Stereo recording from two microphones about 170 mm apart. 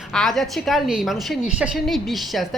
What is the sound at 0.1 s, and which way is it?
A woman's voice, centre (ahead or behind).